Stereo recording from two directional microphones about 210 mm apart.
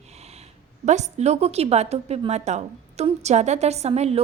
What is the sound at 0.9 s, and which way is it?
A woman's voice, 35° right (ahead or behind).